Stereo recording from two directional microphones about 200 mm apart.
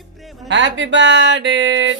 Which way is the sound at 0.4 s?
65° right (ahead or behind).